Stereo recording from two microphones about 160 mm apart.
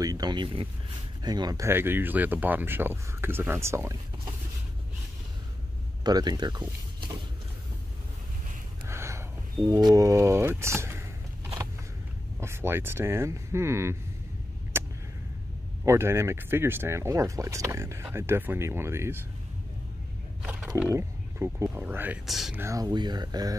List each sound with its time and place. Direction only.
0.0 s speech: 25° right (ahead or behind)
6.0 s speech: 25° right (ahead or behind)
8.8 s gasp: 15° right (ahead or behind)
9.7 s speech: 25° right (ahead or behind)
12.4 s speech: 15° right (ahead or behind)
14.7 s a sound: 15° right (ahead or behind)
15.8 s speech: 15° right (ahead or behind)
20.9 s speech: 15° right (ahead or behind)
22.2 s speech: centre (ahead or behind)
22.6 s speech: 20° right (ahead or behind)